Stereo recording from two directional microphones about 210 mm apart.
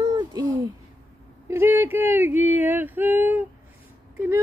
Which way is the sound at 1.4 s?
10° right (ahead or behind).